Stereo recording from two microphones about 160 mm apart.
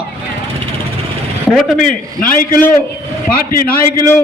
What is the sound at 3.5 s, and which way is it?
Speech, 65° left (ahead or behind).